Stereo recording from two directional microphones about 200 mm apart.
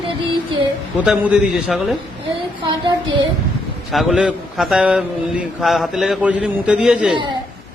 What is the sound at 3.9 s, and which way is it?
A man's voice, centre (ahead or behind).